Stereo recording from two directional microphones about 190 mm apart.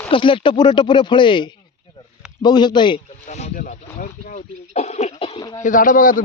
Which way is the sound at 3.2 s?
35° left (ahead or behind).